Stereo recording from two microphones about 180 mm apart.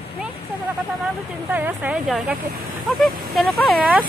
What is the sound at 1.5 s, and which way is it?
Speech, 10° right (ahead or behind).